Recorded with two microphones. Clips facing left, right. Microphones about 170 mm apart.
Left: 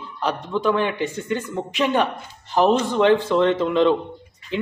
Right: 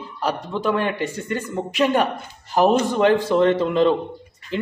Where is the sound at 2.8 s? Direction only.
45° right (ahead or behind).